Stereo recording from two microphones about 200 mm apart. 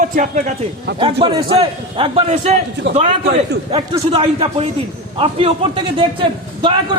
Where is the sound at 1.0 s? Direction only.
25° right (ahead or behind).